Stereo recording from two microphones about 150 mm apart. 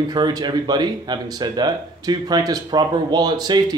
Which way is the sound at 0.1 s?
25° right (ahead or behind).